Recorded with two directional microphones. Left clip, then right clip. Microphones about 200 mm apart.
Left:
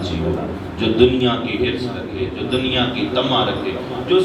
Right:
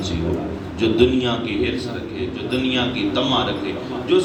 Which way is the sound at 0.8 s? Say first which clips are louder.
Left 2 dB; 50° right (ahead or behind).